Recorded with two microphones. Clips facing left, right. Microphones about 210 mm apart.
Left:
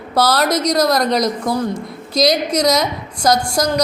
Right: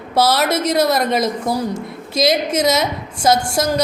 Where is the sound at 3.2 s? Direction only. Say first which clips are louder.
Even; 25° right (ahead or behind).